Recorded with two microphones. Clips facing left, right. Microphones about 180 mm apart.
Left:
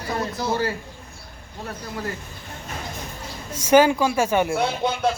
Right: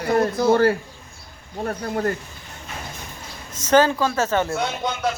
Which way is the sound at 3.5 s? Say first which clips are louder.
Left 1 dB; 10° left (ahead or behind).